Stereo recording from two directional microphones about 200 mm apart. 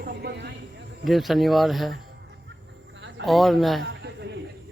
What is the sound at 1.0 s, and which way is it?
Speech, centre (ahead or behind).